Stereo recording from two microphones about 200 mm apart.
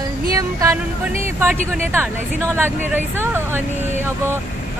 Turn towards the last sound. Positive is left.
turn(degrees=-10)  # may be behind; listen again after turning